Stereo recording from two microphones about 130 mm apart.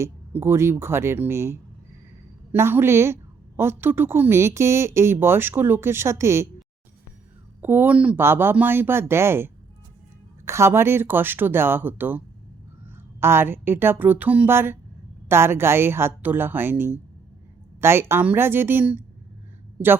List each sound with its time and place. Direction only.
0.0 s a woman's voice: 20° right (ahead or behind)
7.6 s speech: 15° right (ahead or behind)